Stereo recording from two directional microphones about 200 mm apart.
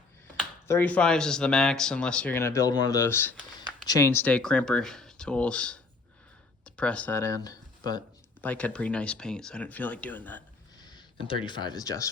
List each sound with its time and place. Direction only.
0.7 s speech: 10° left (ahead or behind)
8.4 s speech: 5° left (ahead or behind)
10.8 s speech: 20° left (ahead or behind)